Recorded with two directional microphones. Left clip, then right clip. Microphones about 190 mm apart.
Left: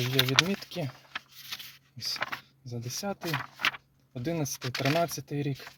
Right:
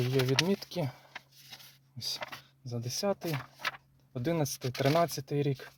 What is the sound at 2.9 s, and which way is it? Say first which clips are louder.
Speech: right 1 dB; centre (ahead or behind).